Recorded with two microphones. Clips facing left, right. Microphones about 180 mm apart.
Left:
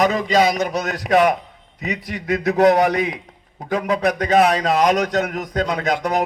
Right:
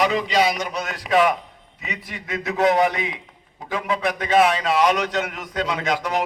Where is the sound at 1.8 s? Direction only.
40° left (ahead or behind).